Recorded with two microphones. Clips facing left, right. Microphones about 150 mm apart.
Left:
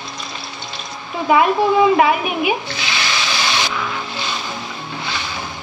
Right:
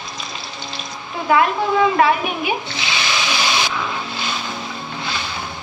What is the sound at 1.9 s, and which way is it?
Speech, 15° left (ahead or behind).